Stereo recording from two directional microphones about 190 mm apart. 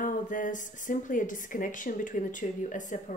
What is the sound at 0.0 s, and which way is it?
A woman's voice, 45° left (ahead or behind).